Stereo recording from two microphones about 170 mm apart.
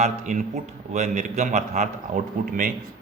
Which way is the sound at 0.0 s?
45° right (ahead or behind).